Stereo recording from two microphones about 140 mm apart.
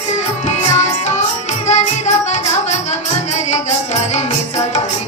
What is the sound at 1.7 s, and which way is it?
Music, 55° left (ahead or behind).